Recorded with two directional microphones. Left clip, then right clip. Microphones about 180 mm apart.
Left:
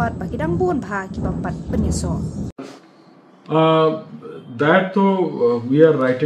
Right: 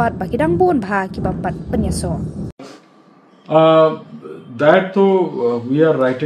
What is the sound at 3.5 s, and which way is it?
Speech, 5° right (ahead or behind).